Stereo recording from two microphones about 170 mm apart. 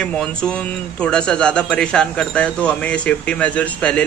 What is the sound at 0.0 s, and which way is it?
A man's voice, 5° left (ahead or behind).